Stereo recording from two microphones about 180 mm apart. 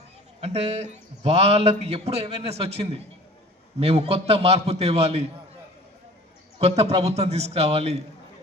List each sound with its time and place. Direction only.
0.4 s a man's voice: 35° right (ahead or behind)
6.6 s a man's voice: 35° right (ahead or behind)